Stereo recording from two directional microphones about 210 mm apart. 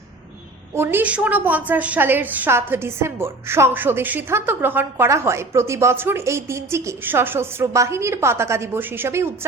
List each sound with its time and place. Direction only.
0.8 s a woman's voice: 10° right (ahead or behind)